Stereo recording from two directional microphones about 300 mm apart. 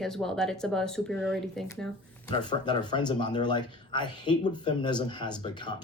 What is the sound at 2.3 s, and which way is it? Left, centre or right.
Speech, centre.